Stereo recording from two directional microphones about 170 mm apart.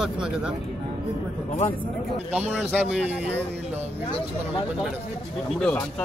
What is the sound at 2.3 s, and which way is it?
A man's voice, 5° right (ahead or behind).